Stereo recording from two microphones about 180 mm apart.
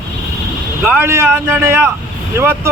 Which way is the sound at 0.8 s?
10° right (ahead or behind).